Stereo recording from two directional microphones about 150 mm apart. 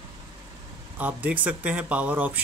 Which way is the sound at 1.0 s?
10° right (ahead or behind).